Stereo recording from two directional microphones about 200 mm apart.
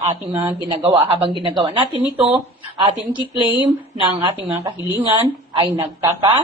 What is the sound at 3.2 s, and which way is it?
Speech, 10° right (ahead or behind).